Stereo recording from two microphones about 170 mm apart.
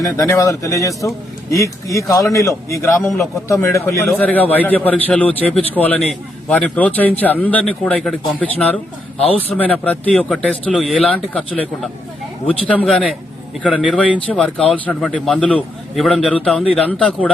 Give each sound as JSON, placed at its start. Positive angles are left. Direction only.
{"t": 0.2, "sound": "speech", "side_deg": 20}
{"t": 3.0, "sound": "a man's voice", "side_deg": 0}
{"t": 3.5, "sound": "a man's voice", "side_deg": 15}
{"t": 14.3, "sound": "a man's voice", "side_deg": 10}